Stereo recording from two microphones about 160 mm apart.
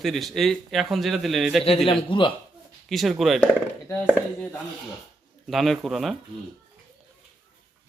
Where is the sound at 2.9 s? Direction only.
Centre (ahead or behind).